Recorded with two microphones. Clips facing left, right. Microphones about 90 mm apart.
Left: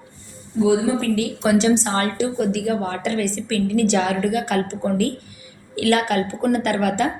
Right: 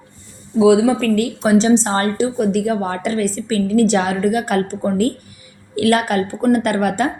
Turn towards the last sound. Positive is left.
turn(degrees=-45)  # may be behind; listen again after turning